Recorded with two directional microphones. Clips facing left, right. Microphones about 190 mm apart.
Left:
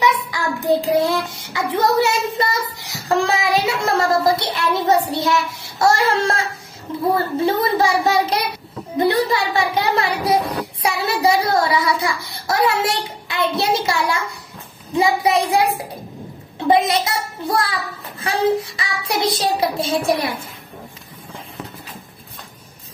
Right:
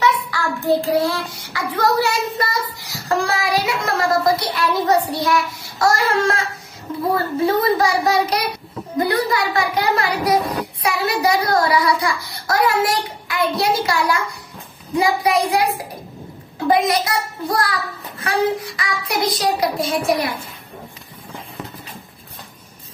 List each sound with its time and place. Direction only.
0.0 s child singing: 15° left (ahead or behind)
6.9 s a sound: 30° left (ahead or behind)
7.4 s a child's voice: 25° left (ahead or behind)
18.2 s a child's voice: 25° left (ahead or behind)